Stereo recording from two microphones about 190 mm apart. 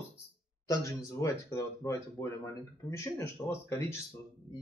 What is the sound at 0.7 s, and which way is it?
Speech, 15° left (ahead or behind).